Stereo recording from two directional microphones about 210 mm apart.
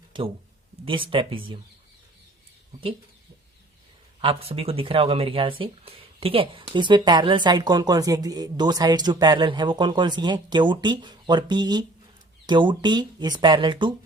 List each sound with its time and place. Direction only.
0.9 s speech: 25° right (ahead or behind)
4.2 s speech: 25° right (ahead or behind)